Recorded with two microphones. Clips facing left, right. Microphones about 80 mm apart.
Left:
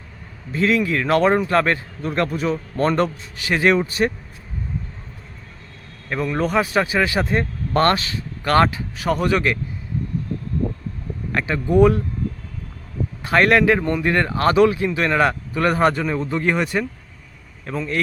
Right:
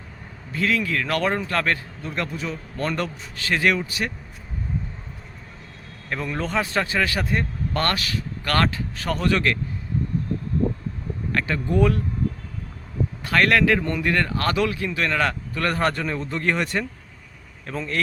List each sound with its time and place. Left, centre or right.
0.5 s speech: left
2.0 s a man's voice: left
3.3 s speech: centre; by 4.1 s left
6.1 s speech: centre
11.3 s speech: centre
13.2 s speech: left; by 18.0 s centre